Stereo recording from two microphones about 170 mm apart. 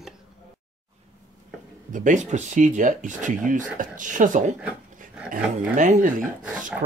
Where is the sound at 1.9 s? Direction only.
50° right (ahead or behind).